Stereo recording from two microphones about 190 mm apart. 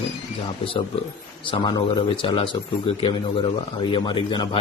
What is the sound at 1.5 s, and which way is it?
Speech, 25° left (ahead or behind).